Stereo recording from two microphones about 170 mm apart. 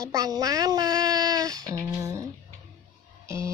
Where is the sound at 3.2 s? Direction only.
15° right (ahead or behind).